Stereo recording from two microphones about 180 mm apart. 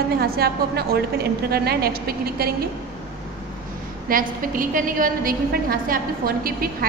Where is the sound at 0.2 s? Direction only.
60° right (ahead or behind).